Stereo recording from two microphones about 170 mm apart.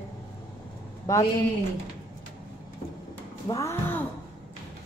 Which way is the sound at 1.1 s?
20° left (ahead or behind).